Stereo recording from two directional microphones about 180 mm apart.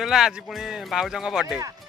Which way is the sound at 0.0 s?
Centre (ahead or behind).